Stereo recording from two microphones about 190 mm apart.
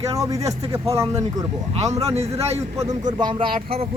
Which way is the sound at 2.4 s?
35° right (ahead or behind).